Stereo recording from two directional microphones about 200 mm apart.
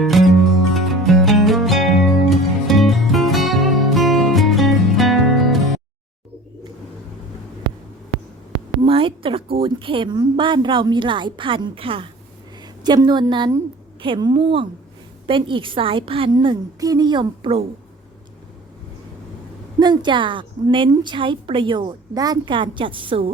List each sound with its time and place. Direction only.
0.0 s music: centre (ahead or behind)
8.8 s a sound: 25° right (ahead or behind)
12.6 s a woman's voice: 20° right (ahead or behind)
19.8 s a woman's voice: 20° right (ahead or behind)